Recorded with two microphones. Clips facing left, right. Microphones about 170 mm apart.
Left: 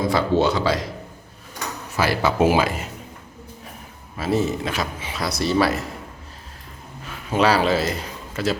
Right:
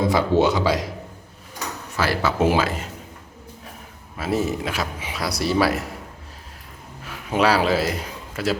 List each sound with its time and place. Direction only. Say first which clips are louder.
0.0 s speech: right 1 dB; 15° right (ahead or behind)
2.0 s speech: left 2 dB; 15° left (ahead or behind)
4.2 s a man's voice: left 1 dB; 5° right (ahead or behind)
7.1 s speech: left 1 dB; 5° right (ahead or behind)